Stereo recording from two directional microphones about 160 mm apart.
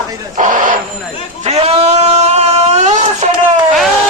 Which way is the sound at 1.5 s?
40° right (ahead or behind).